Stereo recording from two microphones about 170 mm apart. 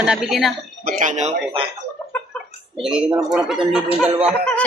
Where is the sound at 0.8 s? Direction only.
45° right (ahead or behind).